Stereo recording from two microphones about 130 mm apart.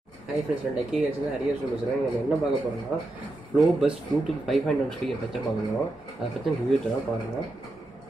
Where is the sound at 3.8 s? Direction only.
Centre (ahead or behind).